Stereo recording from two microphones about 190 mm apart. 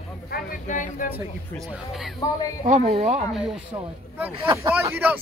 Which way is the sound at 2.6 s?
40° right (ahead or behind).